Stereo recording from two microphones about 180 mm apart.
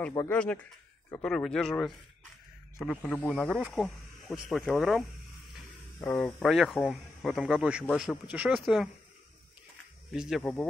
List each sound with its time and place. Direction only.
0.3 s speech: 5° left (ahead or behind)
10.1 s speech: 5° right (ahead or behind)
10.4 s speech: 10° left (ahead or behind)